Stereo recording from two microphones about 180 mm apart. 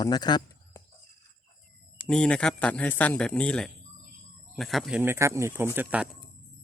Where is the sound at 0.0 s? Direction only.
25° left (ahead or behind).